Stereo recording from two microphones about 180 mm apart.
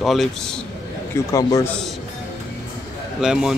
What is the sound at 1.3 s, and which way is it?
Speech, 20° left (ahead or behind).